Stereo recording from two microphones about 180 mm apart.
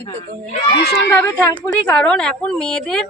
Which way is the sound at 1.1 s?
10° left (ahead or behind).